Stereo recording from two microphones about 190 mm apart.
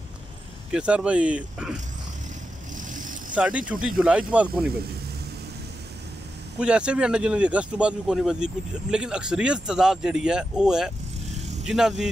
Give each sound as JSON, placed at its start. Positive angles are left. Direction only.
{"t": 0.7, "sound": "speech", "side_deg": -5}
{"t": 2.8, "sound": "vehicle", "side_deg": -45}
{"t": 3.3, "sound": "speech", "side_deg": -5}
{"t": 6.6, "sound": "speech", "side_deg": -5}
{"t": 11.3, "sound": "vehicle", "side_deg": -35}
{"t": 11.6, "sound": "speech", "side_deg": 0}